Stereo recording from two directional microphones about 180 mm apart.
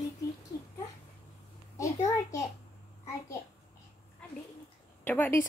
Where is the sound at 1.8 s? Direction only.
20° left (ahead or behind).